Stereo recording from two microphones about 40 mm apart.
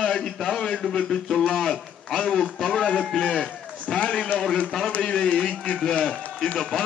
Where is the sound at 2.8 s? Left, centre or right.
Left.